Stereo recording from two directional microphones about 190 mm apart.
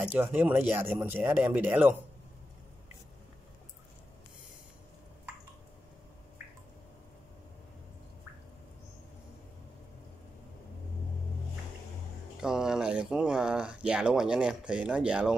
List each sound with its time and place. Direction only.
0.0 s speech: 10° right (ahead or behind)
12.4 s speech: 5° right (ahead or behind)